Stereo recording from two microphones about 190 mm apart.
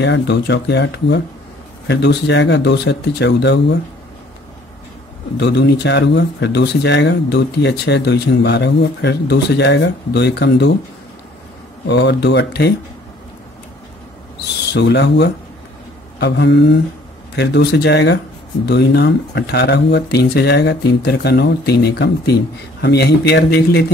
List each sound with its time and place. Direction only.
0.0 s speech: 65° left (ahead or behind)
5.4 s speech: 65° left (ahead or behind)
11.8 s speech: 65° left (ahead or behind)
14.7 s speech: 65° left (ahead or behind)